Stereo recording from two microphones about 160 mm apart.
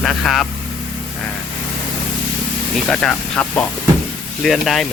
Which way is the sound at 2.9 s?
5° left (ahead or behind).